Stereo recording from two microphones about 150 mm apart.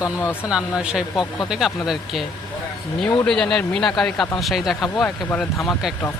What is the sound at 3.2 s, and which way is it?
Speech, 5° left (ahead or behind).